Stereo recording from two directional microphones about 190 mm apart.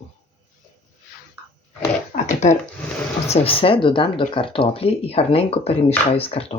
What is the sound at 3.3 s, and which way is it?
Speech, 30° left (ahead or behind).